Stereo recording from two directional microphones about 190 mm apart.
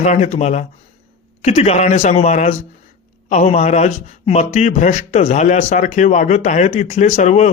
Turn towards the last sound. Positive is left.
turn(degrees=40)  # may be behind; listen again after turning